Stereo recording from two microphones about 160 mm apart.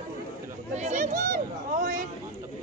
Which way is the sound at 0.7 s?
50° right (ahead or behind).